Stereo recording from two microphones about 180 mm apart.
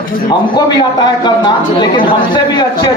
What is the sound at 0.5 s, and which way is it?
A man's voice, 25° left (ahead or behind).